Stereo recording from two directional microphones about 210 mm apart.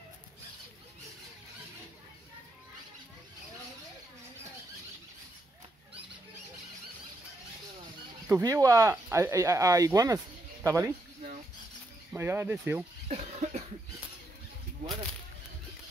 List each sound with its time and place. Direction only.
8.3 s speech: 15° right (ahead or behind)
12.1 s speech: 10° right (ahead or behind)
13.1 s cough: 35° right (ahead or behind)